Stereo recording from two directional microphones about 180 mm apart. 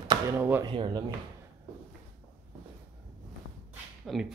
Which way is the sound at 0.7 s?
25° right (ahead or behind).